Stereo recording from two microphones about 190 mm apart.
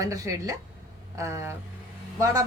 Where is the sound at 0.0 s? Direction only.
15° right (ahead or behind).